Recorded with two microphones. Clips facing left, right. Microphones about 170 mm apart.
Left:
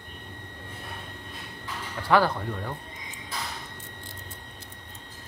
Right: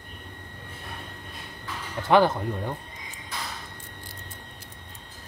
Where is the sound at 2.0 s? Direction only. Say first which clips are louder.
Right 3 dB; 20° right (ahead or behind).